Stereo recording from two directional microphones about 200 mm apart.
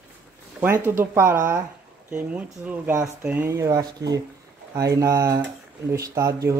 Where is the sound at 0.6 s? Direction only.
10° right (ahead or behind).